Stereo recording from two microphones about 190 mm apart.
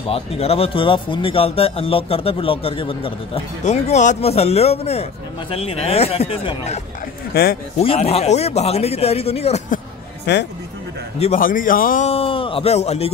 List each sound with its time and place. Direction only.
0.1 s speech: 30° left (ahead or behind)
7.3 s a man's voice: 55° left (ahead or behind)
7.8 s speech: 30° left (ahead or behind)
10.3 s a man's voice: 60° left (ahead or behind)
11.1 s speech: 35° left (ahead or behind)
11.4 s a man's voice: 45° left (ahead or behind)
12.1 s a man's voice: 30° left (ahead or behind)